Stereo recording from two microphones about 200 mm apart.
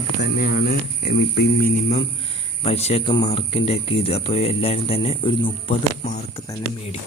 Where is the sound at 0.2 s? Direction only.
45° left (ahead or behind).